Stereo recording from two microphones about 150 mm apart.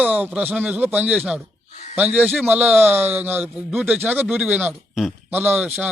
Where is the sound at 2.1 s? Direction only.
10° right (ahead or behind).